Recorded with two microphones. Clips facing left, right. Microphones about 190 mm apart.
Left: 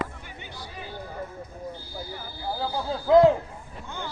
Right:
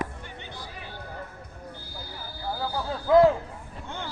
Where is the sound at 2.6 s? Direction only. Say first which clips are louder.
Left 2 dB; 20° left (ahead or behind).